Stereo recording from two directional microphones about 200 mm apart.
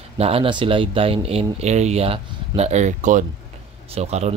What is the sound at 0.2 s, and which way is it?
Speech, 30° right (ahead or behind).